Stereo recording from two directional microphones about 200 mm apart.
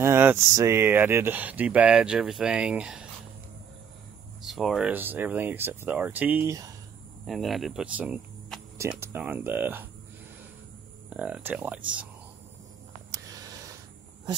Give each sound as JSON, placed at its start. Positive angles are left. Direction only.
{"t": 0.0, "sound": "speech", "side_deg": -10}
{"t": 4.4, "sound": "speech", "side_deg": 0}
{"t": 7.2, "sound": "speech", "side_deg": 0}
{"t": 11.1, "sound": "speech", "side_deg": -5}
{"t": 13.1, "sound": "a sound", "side_deg": -15}